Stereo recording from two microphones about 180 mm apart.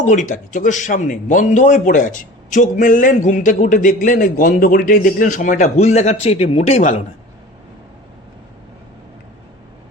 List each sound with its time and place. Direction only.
0.0 s a man's voice: 45° left (ahead or behind)